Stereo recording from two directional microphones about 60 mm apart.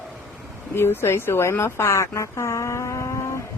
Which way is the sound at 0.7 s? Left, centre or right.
Left.